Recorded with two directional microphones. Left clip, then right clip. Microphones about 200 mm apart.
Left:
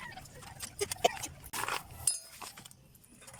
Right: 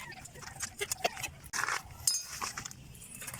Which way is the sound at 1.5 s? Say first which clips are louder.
Right 2 dB; 15° left (ahead or behind).